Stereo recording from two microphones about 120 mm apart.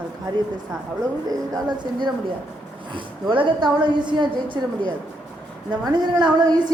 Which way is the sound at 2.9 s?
45° right (ahead or behind).